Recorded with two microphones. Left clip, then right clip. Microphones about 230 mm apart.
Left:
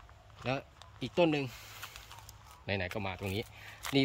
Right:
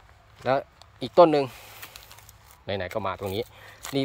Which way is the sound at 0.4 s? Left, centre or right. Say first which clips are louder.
Right 12 dB; right.